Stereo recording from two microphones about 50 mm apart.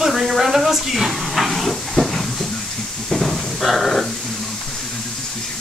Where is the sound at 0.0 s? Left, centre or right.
Centre.